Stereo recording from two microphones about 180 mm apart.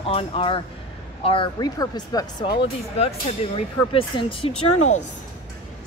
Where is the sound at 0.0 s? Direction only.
30° left (ahead or behind).